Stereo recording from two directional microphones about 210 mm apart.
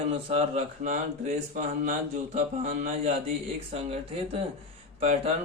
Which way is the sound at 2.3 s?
35° right (ahead or behind).